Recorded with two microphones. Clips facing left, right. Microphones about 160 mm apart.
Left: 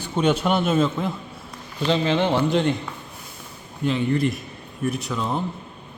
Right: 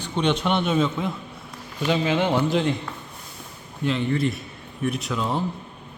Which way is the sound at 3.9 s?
Centre (ahead or behind).